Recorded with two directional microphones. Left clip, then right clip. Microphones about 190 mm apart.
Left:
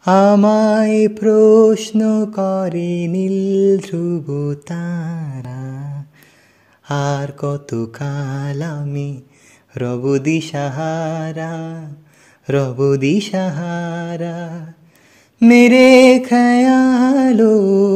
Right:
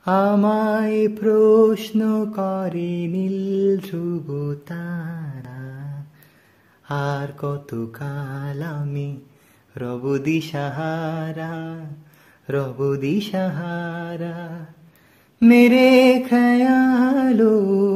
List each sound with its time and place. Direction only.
0.0 s mantra: 35° left (ahead or behind)
6.9 s mantra: 35° left (ahead or behind)